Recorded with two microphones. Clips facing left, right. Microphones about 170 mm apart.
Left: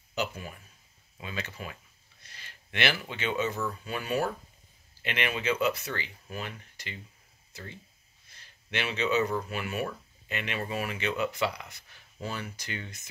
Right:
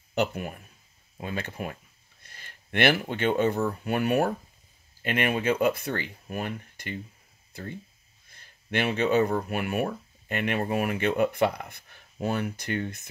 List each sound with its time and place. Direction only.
0.1 s speech: 60° right (ahead or behind)
5.0 s speech: 45° right (ahead or behind)
8.4 s speech: 50° right (ahead or behind)